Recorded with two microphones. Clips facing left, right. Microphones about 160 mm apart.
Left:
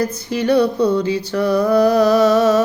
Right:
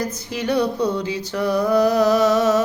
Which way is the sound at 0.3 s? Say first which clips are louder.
Left 5 dB; 15° right (ahead or behind).